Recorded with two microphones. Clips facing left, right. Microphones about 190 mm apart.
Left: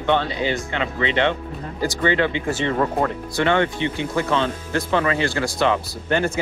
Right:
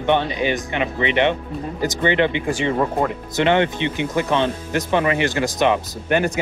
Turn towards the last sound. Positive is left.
turn(degrees=-15)  # may be behind; listen again after turning